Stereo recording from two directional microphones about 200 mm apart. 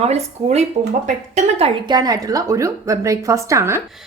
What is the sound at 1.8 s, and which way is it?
A woman's voice, 20° right (ahead or behind).